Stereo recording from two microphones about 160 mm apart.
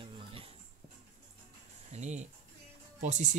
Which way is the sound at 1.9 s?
45° right (ahead or behind).